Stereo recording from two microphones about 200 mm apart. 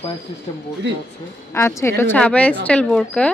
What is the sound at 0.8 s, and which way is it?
Speech, 60° right (ahead or behind).